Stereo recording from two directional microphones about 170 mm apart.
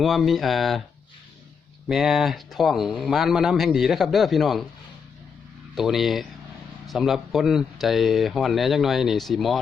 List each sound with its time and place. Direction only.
0.0 s speech: centre (ahead or behind)
1.9 s speech: centre (ahead or behind)
5.7 s speech: centre (ahead or behind)